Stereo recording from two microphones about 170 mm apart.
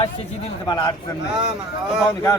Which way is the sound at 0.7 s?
20° left (ahead or behind).